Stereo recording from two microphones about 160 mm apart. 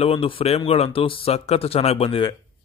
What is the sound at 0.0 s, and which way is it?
Speech, 35° left (ahead or behind).